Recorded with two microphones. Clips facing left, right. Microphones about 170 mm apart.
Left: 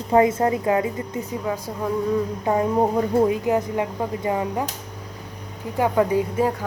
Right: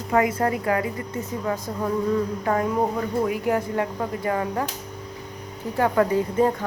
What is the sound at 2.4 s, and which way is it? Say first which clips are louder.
A woman's voice: left 3 dB; 20° left (ahead or behind).